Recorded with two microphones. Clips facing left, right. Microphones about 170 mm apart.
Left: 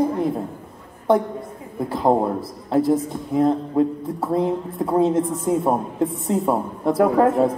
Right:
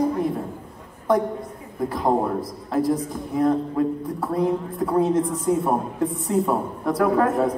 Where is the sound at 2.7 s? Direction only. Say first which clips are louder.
Left 4 dB; 25° left (ahead or behind).